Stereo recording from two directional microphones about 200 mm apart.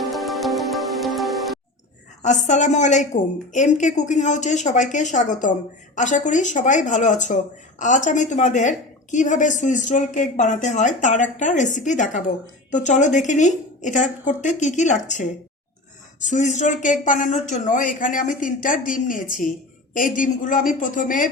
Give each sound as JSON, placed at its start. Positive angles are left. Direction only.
{"t": 0.0, "sound": "music", "side_deg": 0}
{"t": 2.2, "sound": "a woman's voice", "side_deg": 35}